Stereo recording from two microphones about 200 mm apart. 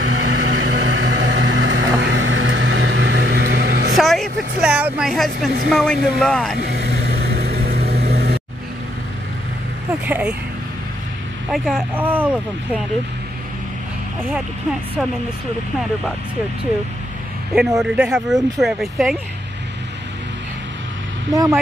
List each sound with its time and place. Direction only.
0.0 s vehicle: 65° right (ahead or behind)
3.9 s vehicle: centre (ahead or behind)
5.7 s speech: centre (ahead or behind)
6.6 s vehicle: 55° right (ahead or behind)
10.0 s speech: 10° right (ahead or behind)
11.5 s speech: centre (ahead or behind)
17.6 s speech: centre (ahead or behind)
21.3 s speech: 20° right (ahead or behind)